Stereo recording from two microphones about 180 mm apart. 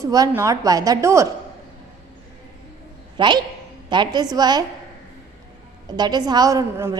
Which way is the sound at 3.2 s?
25° right (ahead or behind).